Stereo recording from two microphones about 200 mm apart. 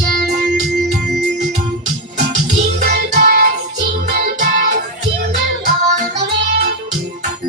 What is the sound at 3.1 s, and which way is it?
Music, 45° right (ahead or behind).